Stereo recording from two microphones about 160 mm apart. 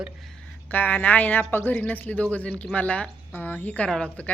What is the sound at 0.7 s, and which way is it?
A woman's voice, 10° left (ahead or behind).